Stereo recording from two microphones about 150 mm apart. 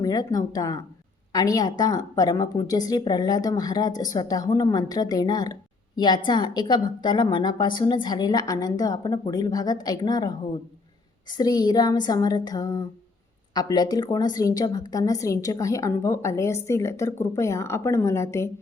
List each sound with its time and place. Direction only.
0.0 s a woman's voice: 25° left (ahead or behind)
11.3 s a woman's voice: 25° left (ahead or behind)